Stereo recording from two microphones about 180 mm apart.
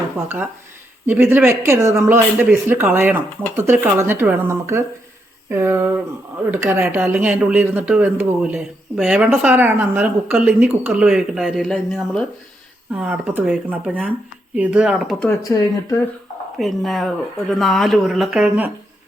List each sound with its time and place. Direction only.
1.0 s speech: 10° right (ahead or behind)
15.3 s speech: 20° left (ahead or behind)
16.6 s speech: centre (ahead or behind)